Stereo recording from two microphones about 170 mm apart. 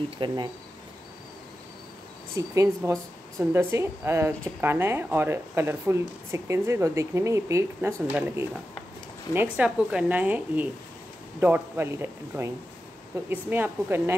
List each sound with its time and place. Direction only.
0.2 s speech: 30° right (ahead or behind)
2.3 s speech: 20° right (ahead or behind)